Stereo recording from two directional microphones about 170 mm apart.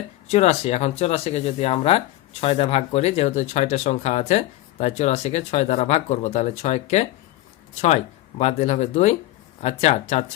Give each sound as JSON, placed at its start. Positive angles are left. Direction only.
{"t": 0.3, "sound": "speech", "side_deg": 40}